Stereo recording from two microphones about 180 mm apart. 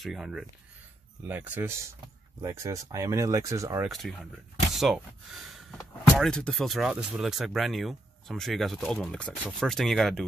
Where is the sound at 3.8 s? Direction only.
Centre (ahead or behind).